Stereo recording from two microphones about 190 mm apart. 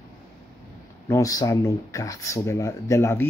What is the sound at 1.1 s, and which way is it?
Speech, 20° left (ahead or behind).